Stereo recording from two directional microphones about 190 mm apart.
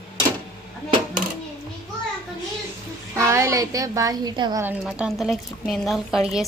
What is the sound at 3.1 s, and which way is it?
A woman's voice, 15° right (ahead or behind).